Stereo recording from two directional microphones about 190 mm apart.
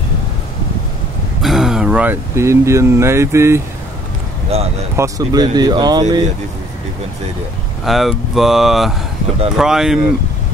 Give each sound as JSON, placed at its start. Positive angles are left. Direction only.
{"t": 1.4, "sound": "speech", "side_deg": 0}
{"t": 4.5, "sound": "speech", "side_deg": -30}
{"t": 4.9, "sound": "speech", "side_deg": -15}
{"t": 7.8, "sound": "speech", "side_deg": 0}